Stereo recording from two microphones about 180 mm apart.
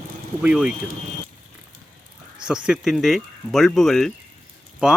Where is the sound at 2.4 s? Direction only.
5° right (ahead or behind).